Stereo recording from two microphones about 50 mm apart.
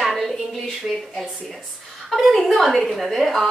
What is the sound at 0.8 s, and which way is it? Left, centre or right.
Speech, right.